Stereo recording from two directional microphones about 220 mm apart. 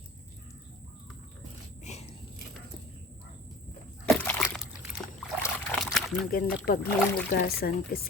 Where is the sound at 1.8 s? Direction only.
30° left (ahead or behind).